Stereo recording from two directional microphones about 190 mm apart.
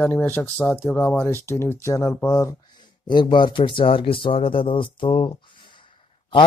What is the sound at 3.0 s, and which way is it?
Speech, 25° left (ahead or behind).